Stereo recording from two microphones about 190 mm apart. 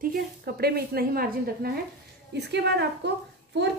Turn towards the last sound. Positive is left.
turn(degrees=-65)  # may be behind; listen again after turning